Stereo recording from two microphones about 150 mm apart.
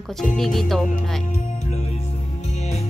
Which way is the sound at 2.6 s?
50° left (ahead or behind).